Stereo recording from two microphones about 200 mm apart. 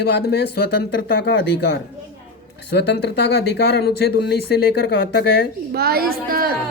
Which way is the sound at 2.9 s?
55° left (ahead or behind).